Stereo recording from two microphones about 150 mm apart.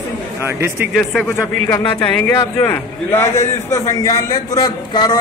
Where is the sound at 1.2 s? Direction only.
15° left (ahead or behind).